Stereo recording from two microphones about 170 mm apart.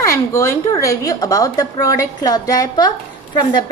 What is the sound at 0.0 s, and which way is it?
A woman's voice, 15° left (ahead or behind).